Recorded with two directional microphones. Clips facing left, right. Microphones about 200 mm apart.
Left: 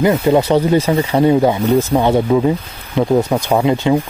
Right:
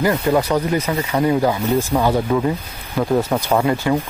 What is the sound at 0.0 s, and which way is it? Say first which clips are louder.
Speech: left 4 dB; 20° left (ahead or behind).